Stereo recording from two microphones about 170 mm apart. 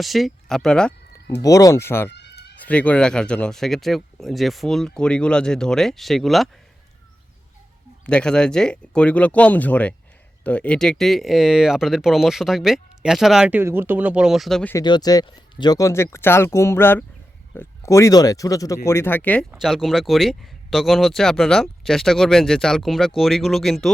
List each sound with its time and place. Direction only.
0.0 s speech: centre (ahead or behind)
1.4 s speech: 20° left (ahead or behind)
2.1 s a sound: 80° left
2.6 s speech: 10° left (ahead or behind)
8.0 s speech: 5° left (ahead or behind)
14.7 s speech: 25° left (ahead or behind)
19.5 s speech: 5° right (ahead or behind)